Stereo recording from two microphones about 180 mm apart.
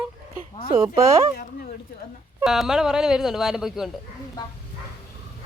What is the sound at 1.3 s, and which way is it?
Speech, 55° left (ahead or behind).